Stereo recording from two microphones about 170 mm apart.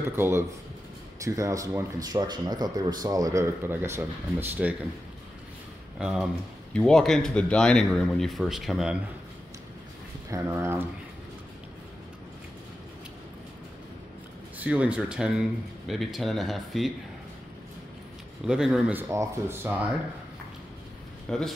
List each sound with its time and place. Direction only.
0.1 s speech: 15° right (ahead or behind)
5.9 s speech: 5° right (ahead or behind)
10.3 s speech: 15° right (ahead or behind)
14.6 s speech: 5° right (ahead or behind)
18.5 s speech: 5° right (ahead or behind)
21.3 s speech: 5° left (ahead or behind)